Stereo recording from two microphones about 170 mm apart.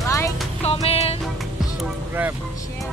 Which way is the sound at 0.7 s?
35° left (ahead or behind).